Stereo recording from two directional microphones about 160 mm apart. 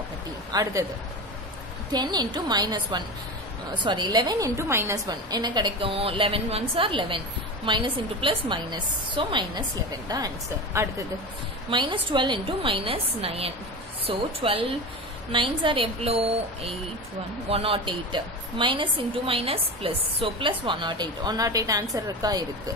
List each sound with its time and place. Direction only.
0.5 s speech: 20° right (ahead or behind)
1.9 s a woman's voice: 25° right (ahead or behind)
11.7 s a woman's voice: 30° right (ahead or behind)
17.5 s a woman's voice: 35° right (ahead or behind)